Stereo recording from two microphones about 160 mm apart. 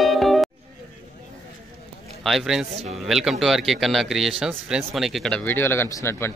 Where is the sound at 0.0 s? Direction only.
Centre (ahead or behind).